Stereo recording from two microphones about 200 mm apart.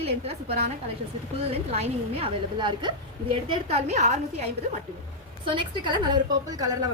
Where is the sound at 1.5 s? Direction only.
30° right (ahead or behind).